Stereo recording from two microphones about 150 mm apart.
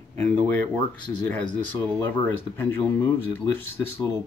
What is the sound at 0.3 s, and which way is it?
Speech, 10° left (ahead or behind).